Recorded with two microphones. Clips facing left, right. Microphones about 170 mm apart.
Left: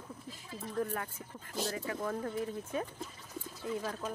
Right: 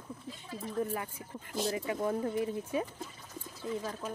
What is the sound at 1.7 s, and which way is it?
Speech, 20° right (ahead or behind).